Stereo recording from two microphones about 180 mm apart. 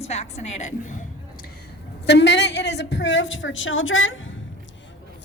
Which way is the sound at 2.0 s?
70° left (ahead or behind).